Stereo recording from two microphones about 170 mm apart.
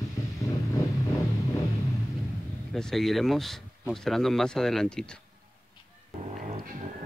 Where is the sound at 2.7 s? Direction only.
Centre (ahead or behind).